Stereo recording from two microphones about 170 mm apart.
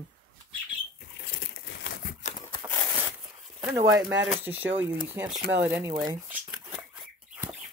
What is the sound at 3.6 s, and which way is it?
Speech, 40° right (ahead or behind).